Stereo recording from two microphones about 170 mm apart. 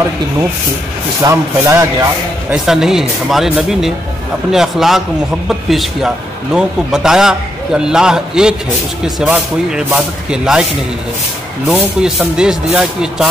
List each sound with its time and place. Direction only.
1.2 s speech: 15° right (ahead or behind)
2.5 s speech: 5° right (ahead or behind)
11.6 s speech: 5° right (ahead or behind)